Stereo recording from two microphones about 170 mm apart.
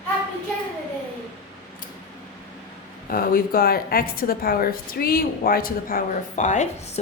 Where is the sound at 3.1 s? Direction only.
60° left (ahead or behind).